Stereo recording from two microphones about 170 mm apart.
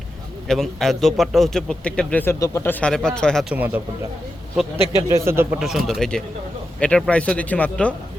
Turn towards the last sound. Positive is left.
turn(degrees=10)  # may be behind; listen again after turning